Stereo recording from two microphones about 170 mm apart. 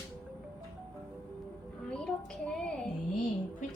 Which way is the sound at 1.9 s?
5° left (ahead or behind).